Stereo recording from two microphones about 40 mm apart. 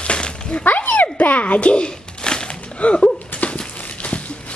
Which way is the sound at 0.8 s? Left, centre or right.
Left.